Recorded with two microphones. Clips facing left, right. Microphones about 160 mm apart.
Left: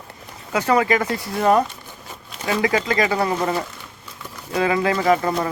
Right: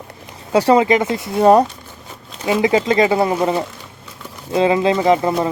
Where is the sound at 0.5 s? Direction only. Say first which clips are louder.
Right 6 dB; 30° right (ahead or behind).